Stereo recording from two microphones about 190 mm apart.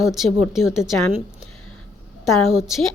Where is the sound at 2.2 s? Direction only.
Centre (ahead or behind).